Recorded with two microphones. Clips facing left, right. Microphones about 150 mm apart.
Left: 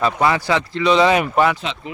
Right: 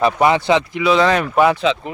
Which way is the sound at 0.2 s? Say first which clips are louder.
Right 3 dB; 20° right (ahead or behind).